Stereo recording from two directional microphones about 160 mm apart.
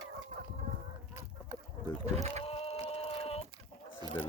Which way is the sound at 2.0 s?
45° right (ahead or behind).